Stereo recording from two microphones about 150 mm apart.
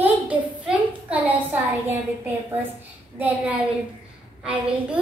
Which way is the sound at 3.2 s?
10° right (ahead or behind).